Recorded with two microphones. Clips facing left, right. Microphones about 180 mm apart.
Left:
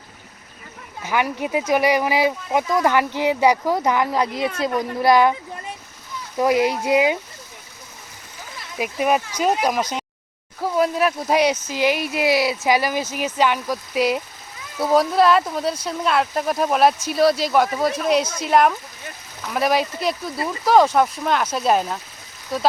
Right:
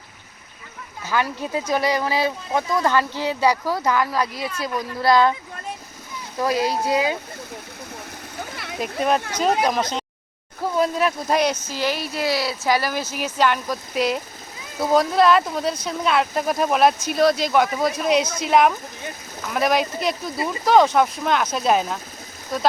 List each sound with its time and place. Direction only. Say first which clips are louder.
1.0 s speech: left 2 dB; 15° left (ahead or behind)
6.4 s speech: left 3 dB; 20° left (ahead or behind)
8.4 s splash: right 5 dB; 65° right (ahead or behind)
8.8 s speech: left 1 dB; 10° left (ahead or behind)
12.1 s speech: left 4 dB; 20° left (ahead or behind); by 20.3 s centre (ahead or behind)
20.3 s speech: even; 20° right (ahead or behind)
20.7 s speech: even; 5° left (ahead or behind)